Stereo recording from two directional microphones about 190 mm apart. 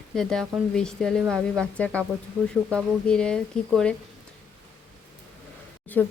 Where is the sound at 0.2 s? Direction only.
5° left (ahead or behind).